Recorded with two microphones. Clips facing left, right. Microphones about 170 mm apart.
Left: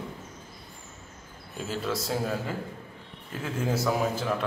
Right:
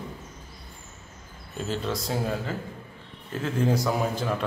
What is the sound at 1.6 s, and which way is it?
A man's voice, 5° left (ahead or behind).